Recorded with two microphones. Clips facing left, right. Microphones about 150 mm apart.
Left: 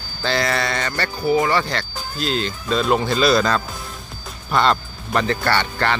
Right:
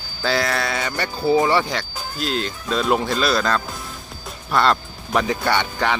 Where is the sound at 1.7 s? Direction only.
5° right (ahead or behind).